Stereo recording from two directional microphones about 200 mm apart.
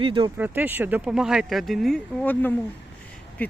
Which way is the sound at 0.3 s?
10° right (ahead or behind).